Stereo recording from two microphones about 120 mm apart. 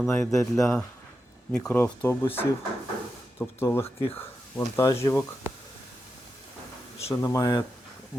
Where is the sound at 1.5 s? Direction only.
5° left (ahead or behind).